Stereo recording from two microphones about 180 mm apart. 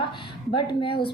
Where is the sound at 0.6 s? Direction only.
30° left (ahead or behind).